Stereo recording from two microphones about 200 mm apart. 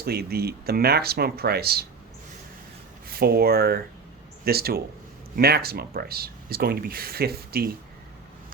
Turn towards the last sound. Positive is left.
turn(degrees=-50)  # may be behind; listen again after turning